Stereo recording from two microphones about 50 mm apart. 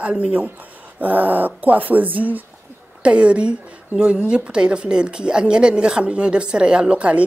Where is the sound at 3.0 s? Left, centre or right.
Right.